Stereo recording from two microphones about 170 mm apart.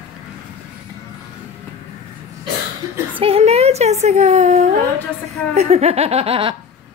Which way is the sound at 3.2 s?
35° right (ahead or behind).